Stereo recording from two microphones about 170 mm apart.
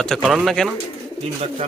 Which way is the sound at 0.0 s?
Centre (ahead or behind).